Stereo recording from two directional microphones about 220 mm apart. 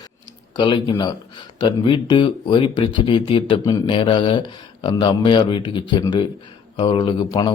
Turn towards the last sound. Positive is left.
turn(degrees=20)  # may be behind; listen again after turning